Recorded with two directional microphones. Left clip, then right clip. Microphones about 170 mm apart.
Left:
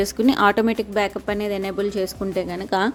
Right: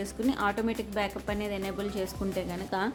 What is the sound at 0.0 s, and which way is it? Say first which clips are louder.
A woman's voice: left 12 dB; 55° left (ahead or behind).